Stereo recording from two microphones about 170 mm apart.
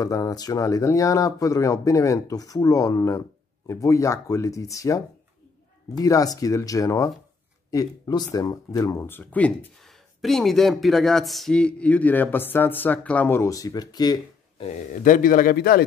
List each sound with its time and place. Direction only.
0.0 s speech: 20° left (ahead or behind)
14.6 s a man's voice: 45° left (ahead or behind); by 15.8 s 60° left (ahead or behind)